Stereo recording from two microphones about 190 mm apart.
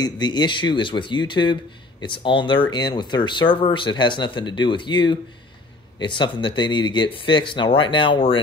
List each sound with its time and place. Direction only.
0.0 s speech: 25° left (ahead or behind)